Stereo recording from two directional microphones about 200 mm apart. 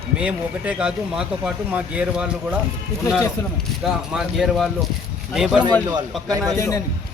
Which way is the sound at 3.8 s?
Centre (ahead or behind).